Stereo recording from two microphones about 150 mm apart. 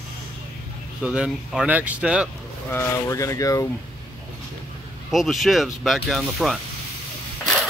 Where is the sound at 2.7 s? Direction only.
20° left (ahead or behind).